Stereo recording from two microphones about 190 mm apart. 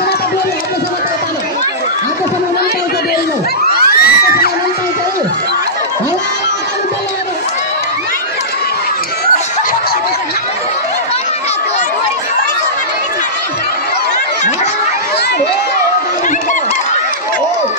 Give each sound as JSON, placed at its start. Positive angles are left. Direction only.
{"t": 3.7, "sound": "children shouting", "side_deg": 55}